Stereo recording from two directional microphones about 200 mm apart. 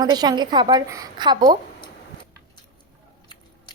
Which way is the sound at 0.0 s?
20° right (ahead or behind).